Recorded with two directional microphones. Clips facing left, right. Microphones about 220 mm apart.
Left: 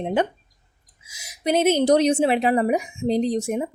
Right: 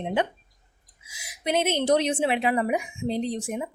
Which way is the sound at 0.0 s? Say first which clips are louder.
Left 4 dB; 45° left (ahead or behind).